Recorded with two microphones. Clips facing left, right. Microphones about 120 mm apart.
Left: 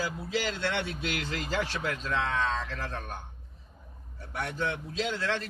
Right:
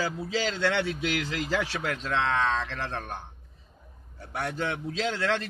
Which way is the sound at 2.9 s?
30° right (ahead or behind).